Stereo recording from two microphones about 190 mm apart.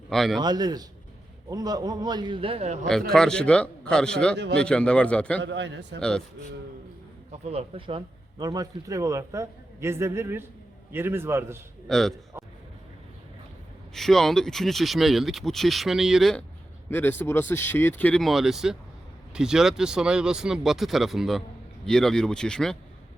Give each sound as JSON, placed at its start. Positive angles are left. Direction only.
{"t": 0.1, "sound": "speech", "side_deg": 0}
{"t": 0.3, "sound": "a man's voice", "side_deg": -20}
{"t": 3.1, "sound": "speech", "side_deg": 5}
{"t": 5.4, "sound": "a man's voice", "side_deg": -70}
{"t": 6.0, "sound": "speech", "side_deg": 5}
{"t": 7.4, "sound": "speech", "side_deg": -30}
{"t": 11.9, "sound": "speech", "side_deg": 0}
{"t": 13.9, "sound": "speech", "side_deg": 0}